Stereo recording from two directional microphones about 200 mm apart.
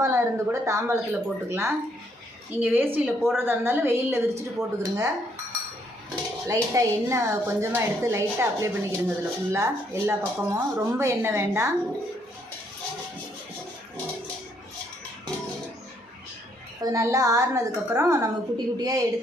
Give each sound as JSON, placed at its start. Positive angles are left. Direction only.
{"t": 0.0, "sound": "a woman's voice", "side_deg": -15}
{"t": 6.4, "sound": "a woman's voice", "side_deg": -15}
{"t": 16.8, "sound": "a woman's voice", "side_deg": -15}